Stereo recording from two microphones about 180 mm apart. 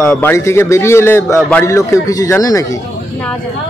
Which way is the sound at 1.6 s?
15° left (ahead or behind).